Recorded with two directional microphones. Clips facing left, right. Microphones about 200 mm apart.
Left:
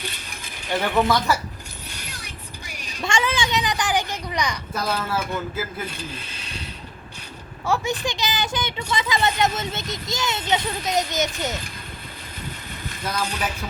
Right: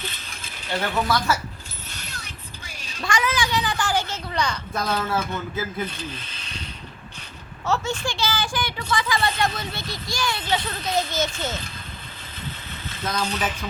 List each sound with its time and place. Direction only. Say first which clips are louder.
0.0 s coin: left 1 dB; 15° left (ahead or behind)
1.9 s a sound: even; 10° left (ahead or behind)
3.1 s a child's voice: even; 25° left (ahead or behind)
6.0 s a sound: even; 10° left (ahead or behind)
7.6 s a woman's voice: left 1 dB; 15° left (ahead or behind)
12.8 s speech: right 1 dB; 15° left (ahead or behind)